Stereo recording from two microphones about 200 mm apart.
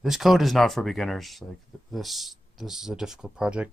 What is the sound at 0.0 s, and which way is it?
Speech, centre (ahead or behind).